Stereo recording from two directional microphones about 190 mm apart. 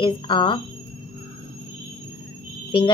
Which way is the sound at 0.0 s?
25° left (ahead or behind).